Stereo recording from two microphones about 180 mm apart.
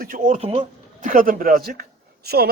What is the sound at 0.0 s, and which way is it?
Speech, 45° right (ahead or behind).